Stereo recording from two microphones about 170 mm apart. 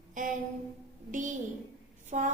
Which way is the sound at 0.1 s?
50° right (ahead or behind).